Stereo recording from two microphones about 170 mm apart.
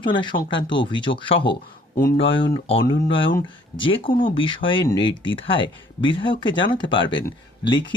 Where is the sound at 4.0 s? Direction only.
55° left (ahead or behind).